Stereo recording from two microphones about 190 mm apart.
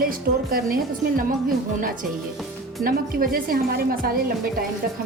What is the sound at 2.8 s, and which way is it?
A woman's voice, 50° right (ahead or behind).